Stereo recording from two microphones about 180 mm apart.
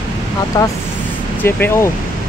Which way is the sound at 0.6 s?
20° left (ahead or behind).